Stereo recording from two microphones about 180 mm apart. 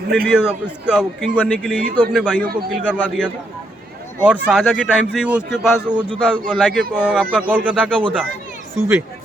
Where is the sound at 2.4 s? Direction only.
55° right (ahead or behind).